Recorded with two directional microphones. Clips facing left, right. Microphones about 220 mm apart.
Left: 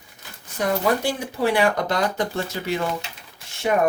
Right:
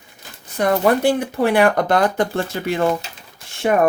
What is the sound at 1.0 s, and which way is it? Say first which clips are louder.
Speech: right 6 dB; 55° right (ahead or behind).